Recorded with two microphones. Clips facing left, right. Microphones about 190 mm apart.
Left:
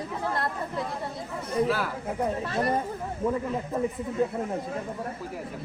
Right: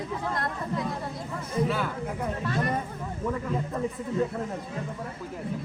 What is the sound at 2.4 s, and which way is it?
Speech, 30° left (ahead or behind).